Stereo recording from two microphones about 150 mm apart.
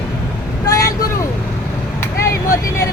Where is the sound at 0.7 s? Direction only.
20° left (ahead or behind).